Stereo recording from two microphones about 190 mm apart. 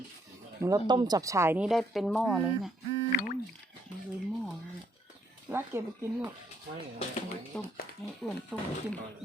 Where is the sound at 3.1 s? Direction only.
50° left (ahead or behind).